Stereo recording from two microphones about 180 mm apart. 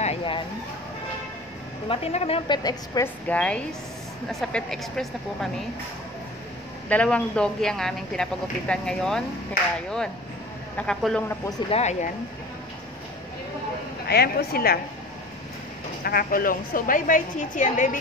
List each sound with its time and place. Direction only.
0.0 s a sound: 30° left (ahead or behind)
1.9 s a woman's voice: 35° left (ahead or behind)
3.3 s a woman's voice: 5° left (ahead or behind)
6.9 s speech: 5° left (ahead or behind)
10.8 s speech: centre (ahead or behind)
11.7 s speech: 40° left (ahead or behind)
14.0 s a woman's voice: 60° left (ahead or behind)
16.0 s a woman's voice: 55° left (ahead or behind)